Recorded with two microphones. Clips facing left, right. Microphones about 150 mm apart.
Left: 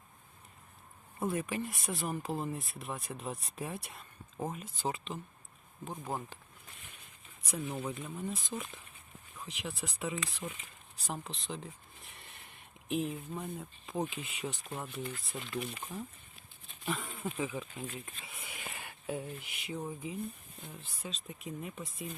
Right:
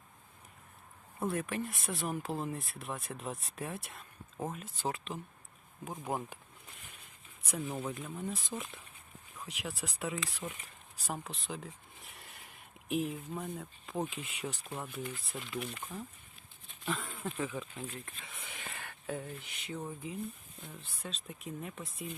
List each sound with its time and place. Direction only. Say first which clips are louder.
1.2 s speech: even; centre (ahead or behind)
6.1 s speech: right 2 dB; 20° right (ahead or behind)
7.4 s speech: even; centre (ahead or behind)